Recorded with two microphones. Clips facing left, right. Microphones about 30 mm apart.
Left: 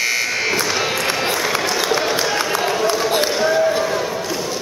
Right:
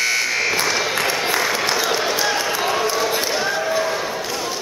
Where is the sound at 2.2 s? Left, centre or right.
Centre.